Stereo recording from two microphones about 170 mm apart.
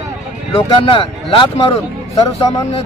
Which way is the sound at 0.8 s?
30° left (ahead or behind).